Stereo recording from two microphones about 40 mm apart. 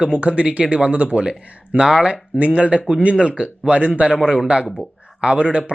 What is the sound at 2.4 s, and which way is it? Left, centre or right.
A man's voice, right.